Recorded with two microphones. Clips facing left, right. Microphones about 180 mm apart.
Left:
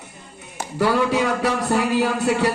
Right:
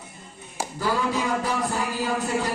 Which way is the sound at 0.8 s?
75° left (ahead or behind).